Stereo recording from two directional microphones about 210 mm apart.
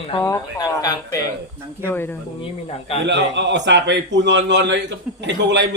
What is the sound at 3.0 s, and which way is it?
A man's voice, 55° right (ahead or behind).